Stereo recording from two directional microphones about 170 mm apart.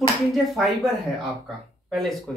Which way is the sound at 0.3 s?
Centre (ahead or behind).